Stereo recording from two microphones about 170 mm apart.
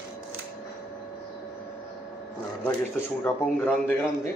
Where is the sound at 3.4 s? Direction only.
10° left (ahead or behind).